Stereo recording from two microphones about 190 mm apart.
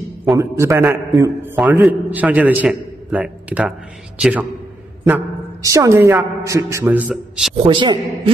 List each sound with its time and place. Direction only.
0.2 s a man's voice: 15° right (ahead or behind)
7.6 s a man's voice: 25° right (ahead or behind)